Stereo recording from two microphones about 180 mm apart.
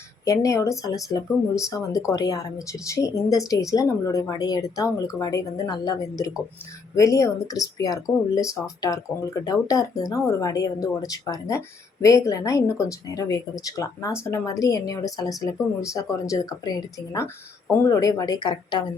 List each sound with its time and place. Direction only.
0.3 s speech: 15° left (ahead or behind)